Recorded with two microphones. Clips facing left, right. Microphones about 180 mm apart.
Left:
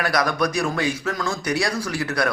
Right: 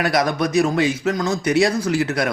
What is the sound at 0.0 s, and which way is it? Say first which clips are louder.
Speech: right 2 dB; 25° right (ahead or behind).